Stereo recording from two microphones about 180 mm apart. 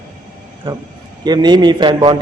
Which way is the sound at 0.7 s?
25° right (ahead or behind).